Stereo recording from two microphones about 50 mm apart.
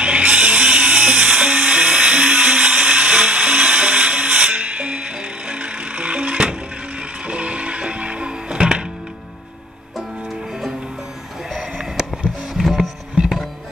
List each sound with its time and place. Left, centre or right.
0.0 s dental drill: right
7.0 s music: right
12.6 s music: centre